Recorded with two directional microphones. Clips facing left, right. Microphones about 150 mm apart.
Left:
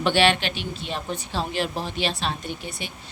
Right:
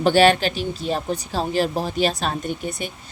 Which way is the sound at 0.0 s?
40° right (ahead or behind).